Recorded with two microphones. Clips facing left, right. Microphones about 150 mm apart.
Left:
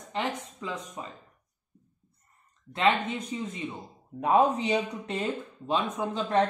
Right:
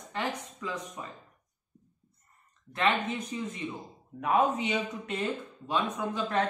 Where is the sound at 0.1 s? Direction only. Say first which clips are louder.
Left 2 dB; 25° left (ahead or behind).